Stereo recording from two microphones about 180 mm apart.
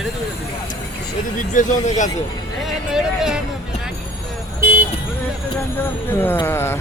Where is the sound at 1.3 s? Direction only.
45° left (ahead or behind).